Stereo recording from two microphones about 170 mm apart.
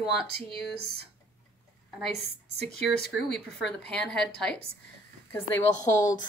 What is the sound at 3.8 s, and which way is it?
Speech, 5° left (ahead or behind).